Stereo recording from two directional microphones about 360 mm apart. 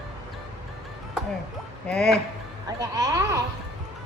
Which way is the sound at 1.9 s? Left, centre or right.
Centre.